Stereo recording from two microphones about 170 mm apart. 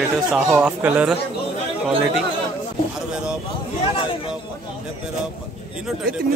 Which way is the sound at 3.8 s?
35° left (ahead or behind).